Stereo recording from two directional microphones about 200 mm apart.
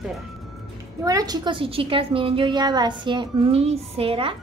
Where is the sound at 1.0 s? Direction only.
15° right (ahead or behind).